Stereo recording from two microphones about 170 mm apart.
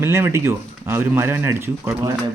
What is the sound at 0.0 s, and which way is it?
Speech, 15° right (ahead or behind).